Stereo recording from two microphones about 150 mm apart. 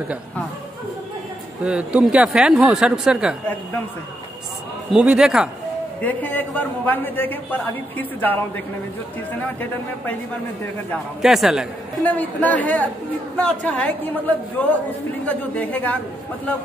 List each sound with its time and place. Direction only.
1.6 s speech: 5° right (ahead or behind)
4.9 s speech: 5° right (ahead or behind)
5.9 s a man's voice: 10° left (ahead or behind)
11.2 s speech: centre (ahead or behind)
12.0 s a man's voice: 10° left (ahead or behind)